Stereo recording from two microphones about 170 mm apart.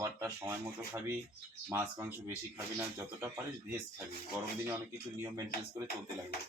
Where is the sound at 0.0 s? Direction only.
15° right (ahead or behind).